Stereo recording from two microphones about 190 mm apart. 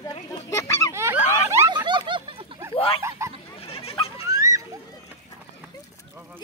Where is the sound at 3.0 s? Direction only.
15° right (ahead or behind).